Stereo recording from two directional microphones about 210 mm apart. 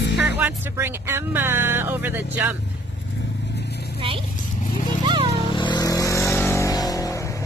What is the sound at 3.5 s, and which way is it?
Vehicle, 50° left (ahead or behind).